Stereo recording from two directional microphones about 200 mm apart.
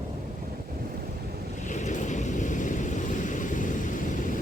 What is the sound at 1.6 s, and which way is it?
Vehicle, 35° left (ahead or behind).